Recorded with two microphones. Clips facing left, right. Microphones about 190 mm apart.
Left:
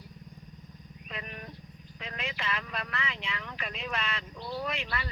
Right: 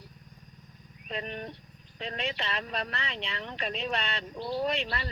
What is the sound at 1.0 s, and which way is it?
Speech, 35° right (ahead or behind).